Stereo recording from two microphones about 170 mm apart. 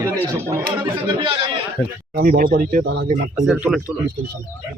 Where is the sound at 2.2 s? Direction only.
60° right (ahead or behind).